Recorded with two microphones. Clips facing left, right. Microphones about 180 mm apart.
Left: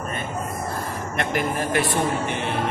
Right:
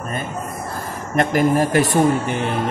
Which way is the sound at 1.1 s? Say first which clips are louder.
Right 9 dB; 40° right (ahead or behind).